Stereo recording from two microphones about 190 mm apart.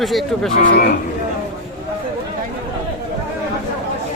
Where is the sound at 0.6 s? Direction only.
50° left (ahead or behind).